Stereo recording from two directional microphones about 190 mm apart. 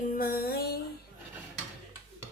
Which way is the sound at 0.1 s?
50° left (ahead or behind).